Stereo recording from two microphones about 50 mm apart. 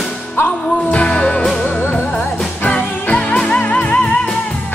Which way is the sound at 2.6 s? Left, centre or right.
Left.